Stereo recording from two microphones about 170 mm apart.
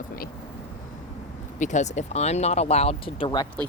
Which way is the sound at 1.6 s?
45° left (ahead or behind).